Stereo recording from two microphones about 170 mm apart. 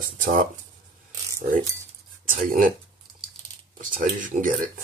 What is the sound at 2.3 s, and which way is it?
Speech, 50° right (ahead or behind).